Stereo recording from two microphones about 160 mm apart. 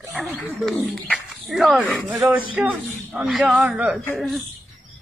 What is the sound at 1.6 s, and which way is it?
A man's voice, 5° right (ahead or behind).